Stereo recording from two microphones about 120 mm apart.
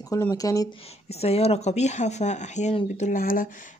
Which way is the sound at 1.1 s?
60° left (ahead or behind).